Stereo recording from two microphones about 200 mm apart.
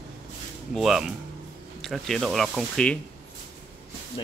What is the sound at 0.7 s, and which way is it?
Speech, centre (ahead or behind).